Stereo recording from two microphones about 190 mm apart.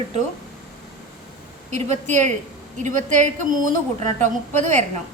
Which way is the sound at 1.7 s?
35° right (ahead or behind).